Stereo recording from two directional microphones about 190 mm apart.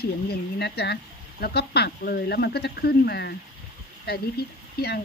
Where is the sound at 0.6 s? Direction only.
60° left (ahead or behind).